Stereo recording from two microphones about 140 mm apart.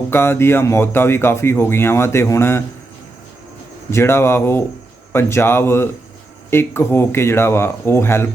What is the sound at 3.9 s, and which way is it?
Speech, 20° left (ahead or behind).